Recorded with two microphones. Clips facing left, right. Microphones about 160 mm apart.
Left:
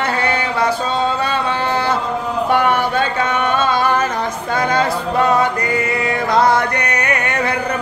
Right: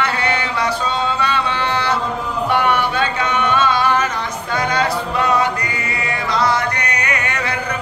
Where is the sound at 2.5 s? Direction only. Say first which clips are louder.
Left 2 dB; 45° left (ahead or behind).